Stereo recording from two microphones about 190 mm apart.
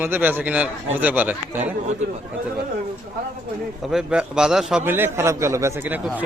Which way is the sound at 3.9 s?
5° right (ahead or behind).